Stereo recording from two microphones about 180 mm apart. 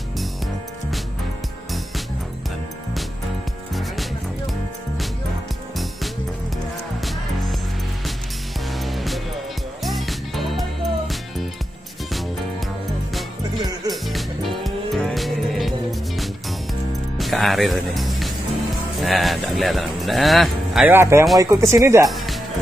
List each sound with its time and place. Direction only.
8.8 s music: centre (ahead or behind)
13.8 s music: centre (ahead or behind)
17.2 s music: centre (ahead or behind)
20.9 s speech: 15° right (ahead or behind)
22.0 s music: centre (ahead or behind)